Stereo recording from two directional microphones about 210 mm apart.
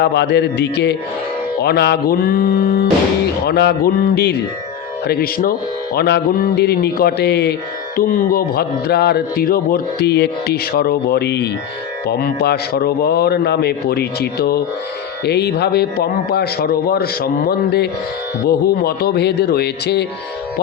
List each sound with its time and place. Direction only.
0.0 s speech: 55° left (ahead or behind)